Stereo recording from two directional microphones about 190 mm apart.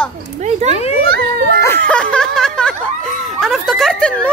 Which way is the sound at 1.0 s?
55° right (ahead or behind).